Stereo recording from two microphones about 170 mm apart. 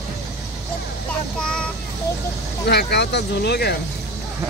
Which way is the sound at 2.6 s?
80° left.